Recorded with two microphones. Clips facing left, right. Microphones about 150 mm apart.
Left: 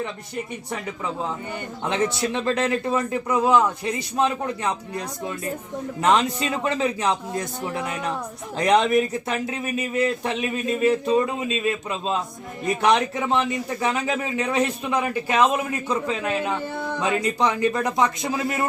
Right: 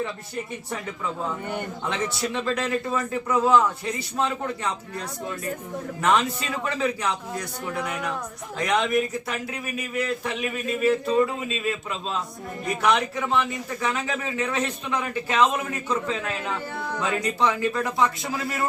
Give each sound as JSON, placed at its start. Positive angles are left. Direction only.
{"t": 1.9, "sound": "a man's voice", "side_deg": 20}
{"t": 8.5, "sound": "a man's voice", "side_deg": 35}